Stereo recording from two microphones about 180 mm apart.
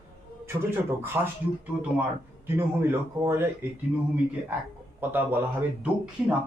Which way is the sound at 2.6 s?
10° right (ahead or behind).